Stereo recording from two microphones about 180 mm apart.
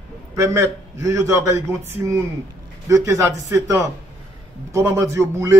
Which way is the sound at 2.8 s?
15° right (ahead or behind).